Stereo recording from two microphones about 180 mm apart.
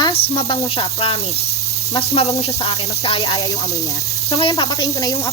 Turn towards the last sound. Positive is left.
turn(degrees=20)  # may be behind; listen again after turning